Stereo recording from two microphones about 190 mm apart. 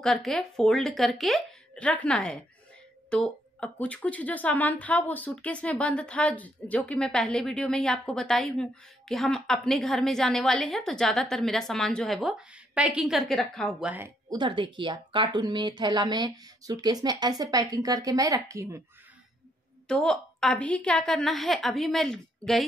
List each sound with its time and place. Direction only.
0.0 s speech: centre (ahead or behind)
14.3 s speech: 25° right (ahead or behind)
19.9 s speech: 5° left (ahead or behind)